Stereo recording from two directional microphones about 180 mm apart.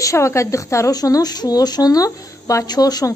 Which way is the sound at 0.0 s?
15° left (ahead or behind).